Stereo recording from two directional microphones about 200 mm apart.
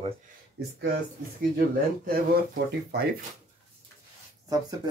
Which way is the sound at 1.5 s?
45° right (ahead or behind).